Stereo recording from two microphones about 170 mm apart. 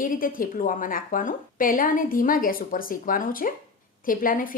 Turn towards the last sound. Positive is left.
turn(degrees=55)  # may be behind; listen again after turning